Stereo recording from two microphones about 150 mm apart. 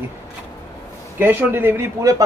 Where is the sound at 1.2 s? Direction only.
15° right (ahead or behind).